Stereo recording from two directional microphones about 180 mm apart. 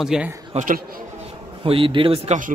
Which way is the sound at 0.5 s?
45° right (ahead or behind).